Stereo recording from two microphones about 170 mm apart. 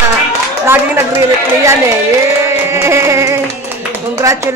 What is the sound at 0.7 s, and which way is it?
Speech, 10° right (ahead or behind).